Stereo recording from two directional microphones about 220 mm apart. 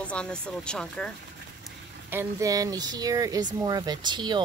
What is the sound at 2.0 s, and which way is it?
Speech, 10° right (ahead or behind).